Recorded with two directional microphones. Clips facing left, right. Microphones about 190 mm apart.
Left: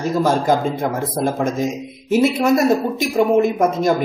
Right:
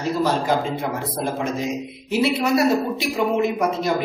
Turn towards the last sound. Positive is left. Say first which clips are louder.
# left 5 dB
turn(degrees=45)  # may be behind; listen again after turning